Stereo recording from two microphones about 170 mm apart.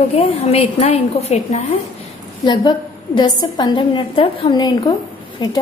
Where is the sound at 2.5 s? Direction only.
25° left (ahead or behind).